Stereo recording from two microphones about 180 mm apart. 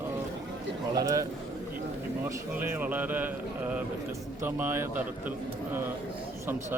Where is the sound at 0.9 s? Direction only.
20° right (ahead or behind).